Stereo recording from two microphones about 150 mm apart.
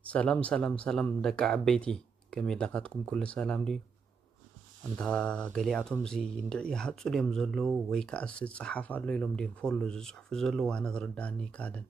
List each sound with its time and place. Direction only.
0.0 s speech: 10° left (ahead or behind)
4.9 s speech: 5° left (ahead or behind)